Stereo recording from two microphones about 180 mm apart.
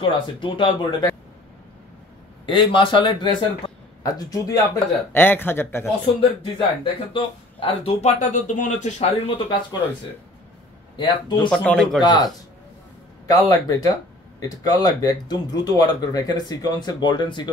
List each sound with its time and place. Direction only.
0.0 s speech: 25° left (ahead or behind)
2.4 s speech: 30° left (ahead or behind)
6.4 s speech: 25° left (ahead or behind)
11.0 s speech: 25° left (ahead or behind)
11.5 s speech: 5° left (ahead or behind)
12.0 s speech: 20° left (ahead or behind)
13.3 s speech: 20° left (ahead or behind)